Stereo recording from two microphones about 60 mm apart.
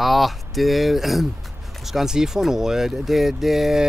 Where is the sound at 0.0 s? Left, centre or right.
Centre.